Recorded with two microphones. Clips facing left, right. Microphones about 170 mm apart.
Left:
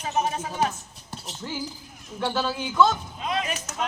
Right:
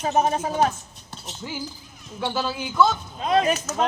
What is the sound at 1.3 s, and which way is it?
A man's voice, 10° right (ahead or behind).